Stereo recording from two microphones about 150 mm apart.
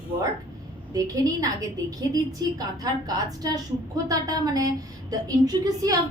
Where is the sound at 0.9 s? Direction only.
25° right (ahead or behind).